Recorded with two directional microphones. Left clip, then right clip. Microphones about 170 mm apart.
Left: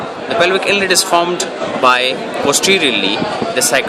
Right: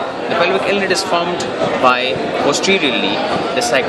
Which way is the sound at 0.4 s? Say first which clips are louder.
Left 3 dB; 50° left (ahead or behind).